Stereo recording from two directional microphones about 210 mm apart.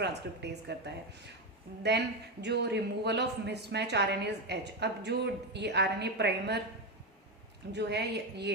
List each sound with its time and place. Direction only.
0.0 s a man's voice: 55° right (ahead or behind)
7.7 s a man's voice: 55° right (ahead or behind)